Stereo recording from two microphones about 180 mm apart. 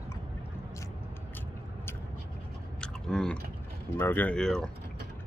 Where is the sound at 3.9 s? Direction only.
10° left (ahead or behind).